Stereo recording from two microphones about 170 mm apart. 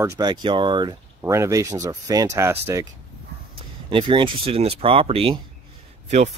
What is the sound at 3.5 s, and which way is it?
Speech, 30° right (ahead or behind).